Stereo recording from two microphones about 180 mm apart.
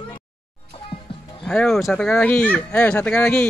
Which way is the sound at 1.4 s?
5° left (ahead or behind).